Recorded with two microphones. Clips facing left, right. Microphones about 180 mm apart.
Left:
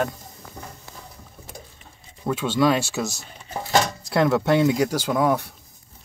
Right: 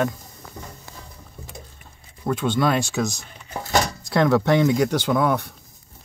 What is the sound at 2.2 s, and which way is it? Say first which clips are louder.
Speech: left 1 dB; 5° left (ahead or behind).